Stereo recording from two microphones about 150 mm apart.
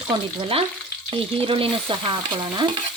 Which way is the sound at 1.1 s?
35° right (ahead or behind).